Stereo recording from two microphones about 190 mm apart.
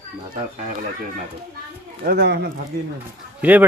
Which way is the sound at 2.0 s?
55° right (ahead or behind).